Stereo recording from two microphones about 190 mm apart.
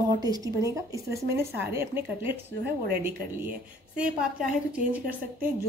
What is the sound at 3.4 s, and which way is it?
Speech, 5° right (ahead or behind).